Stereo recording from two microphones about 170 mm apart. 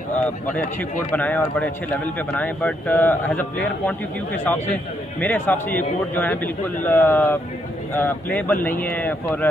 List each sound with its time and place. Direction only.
1.1 s a man's voice: 10° left (ahead or behind)